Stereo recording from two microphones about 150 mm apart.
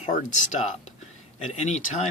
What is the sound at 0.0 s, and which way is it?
Speech, 55° left (ahead or behind).